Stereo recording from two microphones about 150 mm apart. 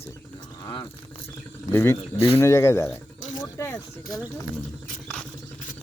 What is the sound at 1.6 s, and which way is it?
Speech, 15° left (ahead or behind).